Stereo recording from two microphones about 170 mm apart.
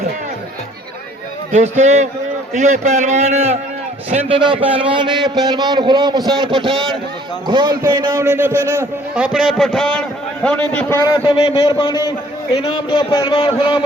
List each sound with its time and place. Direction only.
1.5 s a man's voice: 45° right (ahead or behind); by 6.3 s 25° right (ahead or behind)
7.4 s a man's voice: 25° right (ahead or behind); by 11.0 s 10° left (ahead or behind)
11.0 s a man's voice: 25° left (ahead or behind)